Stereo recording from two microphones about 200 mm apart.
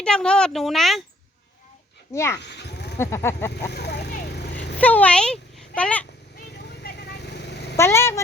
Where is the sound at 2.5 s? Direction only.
60° left (ahead or behind).